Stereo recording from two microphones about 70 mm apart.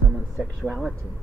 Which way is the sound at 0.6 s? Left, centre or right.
Centre.